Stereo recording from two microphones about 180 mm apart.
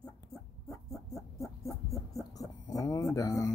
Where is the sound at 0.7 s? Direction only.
20° left (ahead or behind).